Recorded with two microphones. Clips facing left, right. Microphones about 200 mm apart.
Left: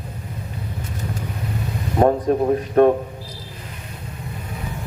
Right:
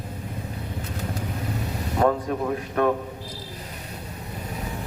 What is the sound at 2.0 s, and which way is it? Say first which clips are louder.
Speech: left 6 dB; 35° left (ahead or behind).